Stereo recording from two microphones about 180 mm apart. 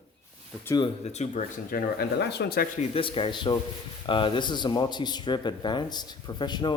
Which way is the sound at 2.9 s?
30° left (ahead or behind).